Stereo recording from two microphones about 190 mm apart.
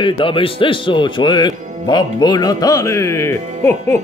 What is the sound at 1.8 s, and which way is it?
Speech, 25° left (ahead or behind).